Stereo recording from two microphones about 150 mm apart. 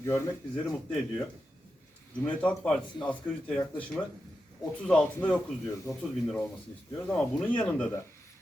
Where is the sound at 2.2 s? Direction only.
5° left (ahead or behind).